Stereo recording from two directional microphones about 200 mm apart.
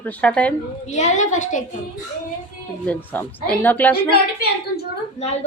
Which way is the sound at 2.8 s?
10° left (ahead or behind).